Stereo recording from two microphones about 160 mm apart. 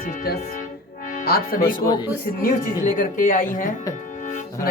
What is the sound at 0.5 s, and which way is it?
Music, 55° left (ahead or behind).